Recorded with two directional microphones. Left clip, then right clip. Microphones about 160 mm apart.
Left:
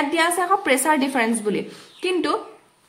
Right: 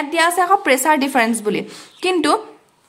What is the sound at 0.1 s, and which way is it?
A woman's voice, 20° right (ahead or behind).